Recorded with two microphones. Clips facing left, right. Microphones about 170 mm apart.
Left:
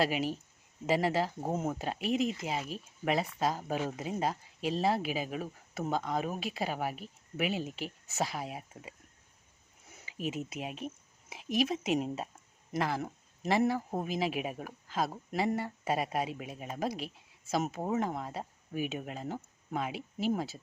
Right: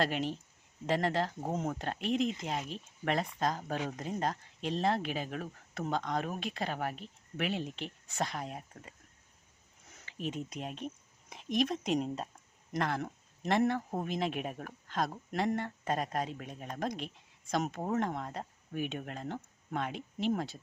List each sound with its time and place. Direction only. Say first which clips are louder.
0.0 s speech: left 2 dB; 10° left (ahead or behind)